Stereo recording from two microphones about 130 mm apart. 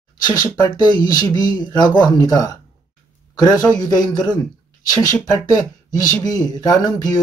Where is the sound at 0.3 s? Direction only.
35° left (ahead or behind).